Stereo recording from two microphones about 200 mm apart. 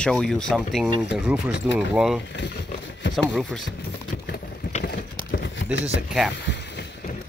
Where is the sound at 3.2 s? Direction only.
Centre (ahead or behind).